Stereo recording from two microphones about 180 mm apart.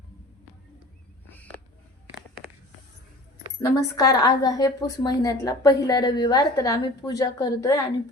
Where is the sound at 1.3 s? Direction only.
10° left (ahead or behind).